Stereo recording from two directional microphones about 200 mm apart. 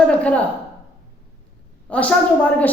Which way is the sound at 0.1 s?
5° left (ahead or behind).